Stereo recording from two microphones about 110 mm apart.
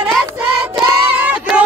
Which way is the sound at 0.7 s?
15° right (ahead or behind).